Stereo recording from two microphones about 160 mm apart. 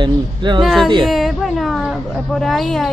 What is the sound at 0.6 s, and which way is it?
Speech, centre (ahead or behind).